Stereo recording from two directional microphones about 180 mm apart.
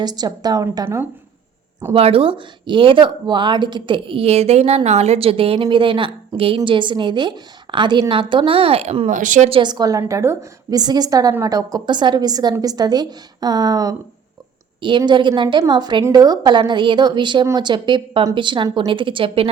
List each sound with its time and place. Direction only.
0.0 s speech: 20° right (ahead or behind)
1.9 s speech: 30° right (ahead or behind)
9.5 s speech: 25° right (ahead or behind)